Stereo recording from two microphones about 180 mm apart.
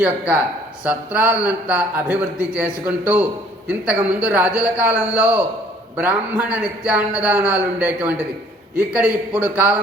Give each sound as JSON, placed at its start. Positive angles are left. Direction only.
{"t": 0.0, "sound": "a man's voice", "side_deg": -5}